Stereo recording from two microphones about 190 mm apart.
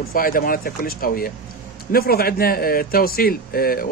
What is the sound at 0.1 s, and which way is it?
Speech, 50° left (ahead or behind).